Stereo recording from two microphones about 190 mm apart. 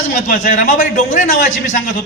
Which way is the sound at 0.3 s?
45° left (ahead or behind).